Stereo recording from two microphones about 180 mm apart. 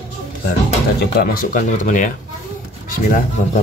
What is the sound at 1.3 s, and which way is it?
Speech, 50° left (ahead or behind).